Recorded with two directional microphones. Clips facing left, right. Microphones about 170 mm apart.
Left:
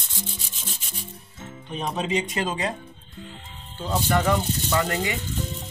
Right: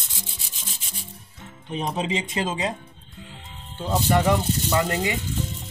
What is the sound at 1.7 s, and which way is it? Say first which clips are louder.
Speech: even; 20° right (ahead or behind).